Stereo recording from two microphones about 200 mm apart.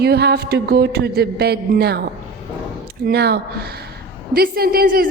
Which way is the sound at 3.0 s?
55° right (ahead or behind).